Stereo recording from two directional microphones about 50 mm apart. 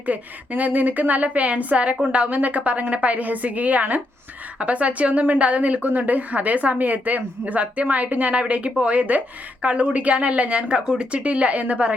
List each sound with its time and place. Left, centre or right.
0.0 s a woman's voice: right